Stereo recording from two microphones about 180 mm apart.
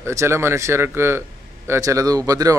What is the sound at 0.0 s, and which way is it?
A man's voice, 15° right (ahead or behind).